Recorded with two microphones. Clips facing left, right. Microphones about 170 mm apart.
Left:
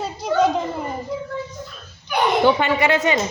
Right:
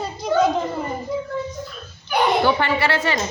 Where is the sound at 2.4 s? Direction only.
20° left (ahead or behind).